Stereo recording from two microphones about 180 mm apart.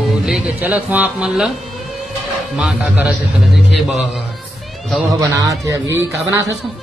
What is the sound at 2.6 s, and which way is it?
Speech, 5° right (ahead or behind).